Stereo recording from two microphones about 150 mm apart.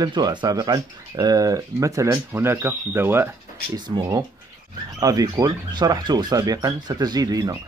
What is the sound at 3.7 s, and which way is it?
Speech, 30° right (ahead or behind).